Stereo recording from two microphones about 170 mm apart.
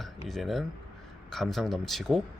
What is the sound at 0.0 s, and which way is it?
Cutlery, centre (ahead or behind).